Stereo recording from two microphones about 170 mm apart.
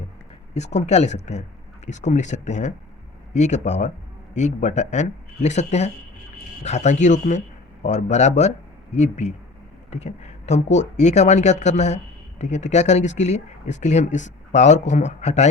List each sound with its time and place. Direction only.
0.5 s speech: 40° left (ahead or behind)